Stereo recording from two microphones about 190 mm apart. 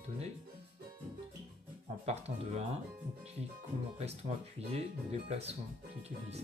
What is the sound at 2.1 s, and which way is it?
Speech, 35° right (ahead or behind).